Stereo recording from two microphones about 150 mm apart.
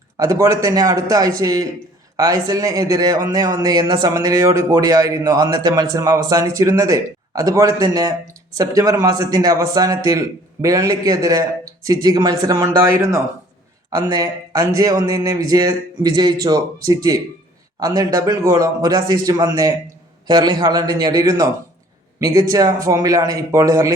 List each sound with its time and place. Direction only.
0.2 s a man's voice: 20° right (ahead or behind)